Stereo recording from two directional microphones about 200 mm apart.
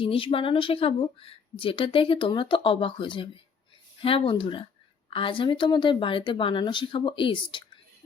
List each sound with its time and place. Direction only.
0.0 s speech: 25° left (ahead or behind)